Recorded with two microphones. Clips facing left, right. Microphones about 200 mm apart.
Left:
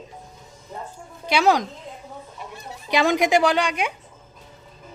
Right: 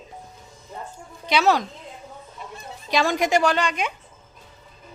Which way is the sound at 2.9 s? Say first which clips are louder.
Left 2 dB; 15° left (ahead or behind).